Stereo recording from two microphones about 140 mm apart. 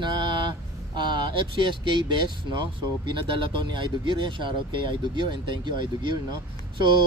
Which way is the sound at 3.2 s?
35° right (ahead or behind).